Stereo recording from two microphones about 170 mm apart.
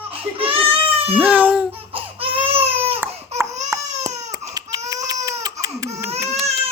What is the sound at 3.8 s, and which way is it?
Baby cry, 45° right (ahead or behind).